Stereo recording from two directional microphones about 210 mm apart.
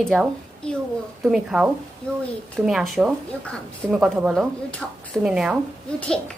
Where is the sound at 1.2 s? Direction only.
5° right (ahead or behind).